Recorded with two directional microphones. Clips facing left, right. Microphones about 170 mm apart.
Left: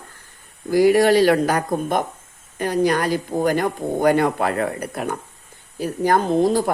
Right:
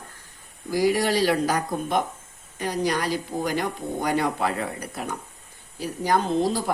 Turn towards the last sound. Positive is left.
turn(degrees=55)  # may be behind; listen again after turning